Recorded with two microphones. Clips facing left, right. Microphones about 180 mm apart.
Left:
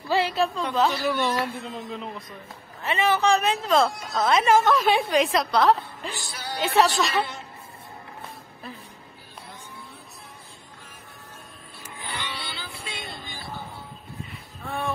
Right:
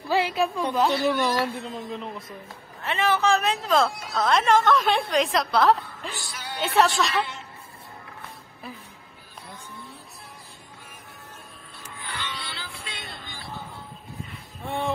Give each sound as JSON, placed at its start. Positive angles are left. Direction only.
{"t": 0.1, "sound": "a woman's voice", "side_deg": -10}
{"t": 1.6, "sound": "speech", "side_deg": 0}
{"t": 6.0, "sound": "music", "side_deg": 35}
{"t": 6.6, "sound": "speech", "side_deg": 0}
{"t": 12.0, "sound": "music", "side_deg": 15}
{"t": 14.6, "sound": "speech", "side_deg": -20}